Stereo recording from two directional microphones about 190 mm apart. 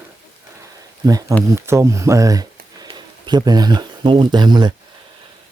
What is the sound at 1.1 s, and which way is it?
A man's voice, 20° right (ahead or behind).